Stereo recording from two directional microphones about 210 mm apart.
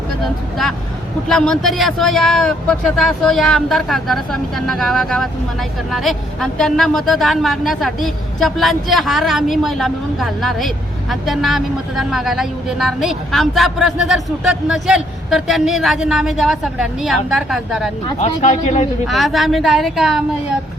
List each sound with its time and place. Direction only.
1.3 s a man's voice: 5° left (ahead or behind)
18.4 s a man's voice: 35° left (ahead or behind)
19.0 s a man's voice: centre (ahead or behind)